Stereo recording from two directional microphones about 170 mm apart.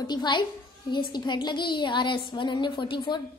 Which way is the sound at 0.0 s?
25° left (ahead or behind).